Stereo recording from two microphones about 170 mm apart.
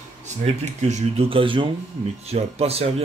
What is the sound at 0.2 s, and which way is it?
Speech, 45° right (ahead or behind).